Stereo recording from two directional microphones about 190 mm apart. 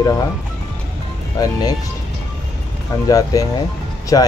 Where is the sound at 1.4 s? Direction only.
20° left (ahead or behind).